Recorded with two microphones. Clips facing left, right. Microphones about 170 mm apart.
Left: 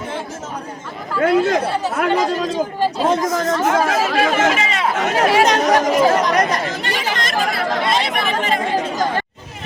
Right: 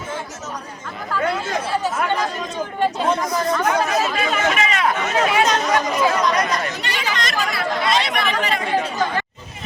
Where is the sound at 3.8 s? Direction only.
90° left.